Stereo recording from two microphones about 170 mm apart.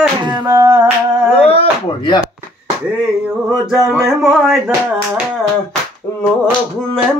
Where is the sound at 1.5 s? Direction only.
30° left (ahead or behind).